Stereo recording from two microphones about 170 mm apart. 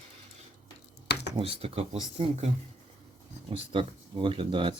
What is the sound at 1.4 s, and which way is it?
Speech, 35° right (ahead or behind).